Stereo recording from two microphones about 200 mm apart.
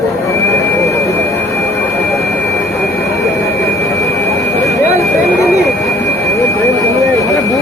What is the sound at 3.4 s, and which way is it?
Jet engine, 15° left (ahead or behind).